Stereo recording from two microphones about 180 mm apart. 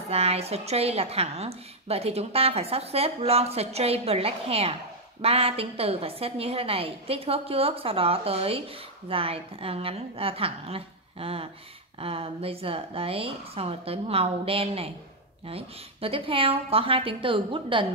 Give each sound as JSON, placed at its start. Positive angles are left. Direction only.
{"t": 0.1, "sound": "a woman's voice", "side_deg": -35}